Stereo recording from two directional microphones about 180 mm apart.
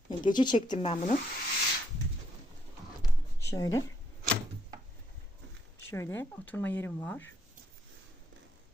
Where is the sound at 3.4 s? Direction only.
20° left (ahead or behind).